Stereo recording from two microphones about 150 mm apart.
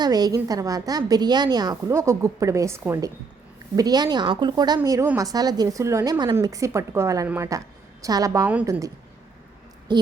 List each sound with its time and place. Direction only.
0.0 s a woman's voice: 25° right (ahead or behind)